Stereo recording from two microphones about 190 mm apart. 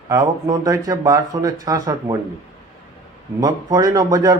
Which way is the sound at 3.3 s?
20° right (ahead or behind).